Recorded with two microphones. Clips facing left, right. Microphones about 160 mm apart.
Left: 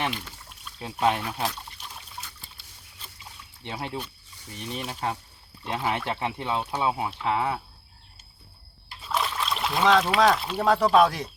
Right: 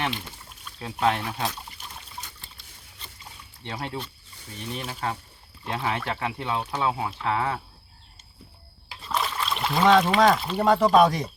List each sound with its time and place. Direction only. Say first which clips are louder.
0.8 s speech: even; 15° left (ahead or behind)
1.2 s speech: even; 15° right (ahead or behind)
3.6 s speech: even; 15° left (ahead or behind)
9.0 s speech: even; centre (ahead or behind)